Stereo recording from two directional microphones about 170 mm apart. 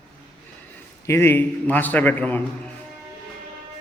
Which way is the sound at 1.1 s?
15° left (ahead or behind).